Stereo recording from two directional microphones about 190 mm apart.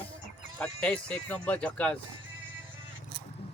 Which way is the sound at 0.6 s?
5° left (ahead or behind).